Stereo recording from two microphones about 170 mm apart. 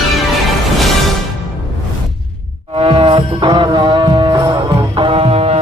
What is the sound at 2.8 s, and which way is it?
Music, 30° right (ahead or behind).